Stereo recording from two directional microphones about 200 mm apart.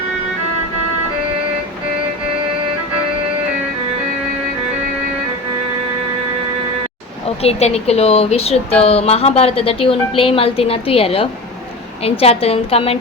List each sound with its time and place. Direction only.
7.3 s speech: 30° left (ahead or behind)